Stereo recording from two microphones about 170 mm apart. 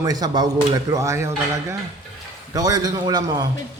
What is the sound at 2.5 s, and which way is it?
Speech, 20° right (ahead or behind).